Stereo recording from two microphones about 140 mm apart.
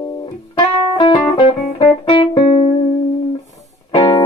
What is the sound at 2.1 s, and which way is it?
Music, 40° left (ahead or behind).